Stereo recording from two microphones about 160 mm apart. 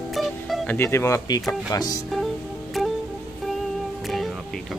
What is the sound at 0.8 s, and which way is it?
Speech, 15° left (ahead or behind).